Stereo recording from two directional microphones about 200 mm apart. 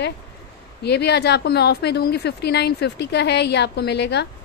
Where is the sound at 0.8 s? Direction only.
55° left (ahead or behind).